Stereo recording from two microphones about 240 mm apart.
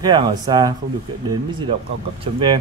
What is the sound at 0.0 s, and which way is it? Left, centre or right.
Speech, centre.